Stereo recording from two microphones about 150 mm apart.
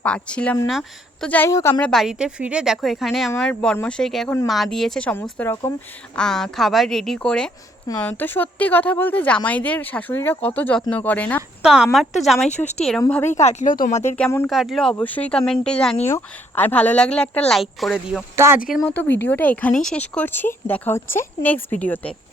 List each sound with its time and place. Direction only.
0.0 s a woman's voice: 5° left (ahead or behind)
1.5 s a woman's voice: 25° left (ahead or behind)
1.8 s speech: centre (ahead or behind)
6.1 s a woman's voice: 5° left (ahead or behind)
11.6 s speech: 5° right (ahead or behind)
12.5 s speech: 50° left (ahead or behind)
13.1 s a woman's voice: 10° left (ahead or behind)
13.3 s speech: 50° left (ahead or behind)
14.4 s a woman's voice: centre (ahead or behind)
18.3 s speech: 15° right (ahead or behind)
18.9 s a woman's voice: 10° left (ahead or behind)